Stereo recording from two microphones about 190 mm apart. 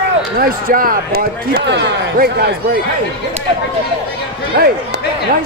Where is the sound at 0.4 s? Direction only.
50° right (ahead or behind).